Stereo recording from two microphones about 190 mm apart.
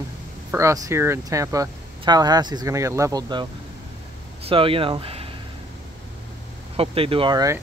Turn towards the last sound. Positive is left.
turn(degrees=-20)  # may be behind; listen again after turning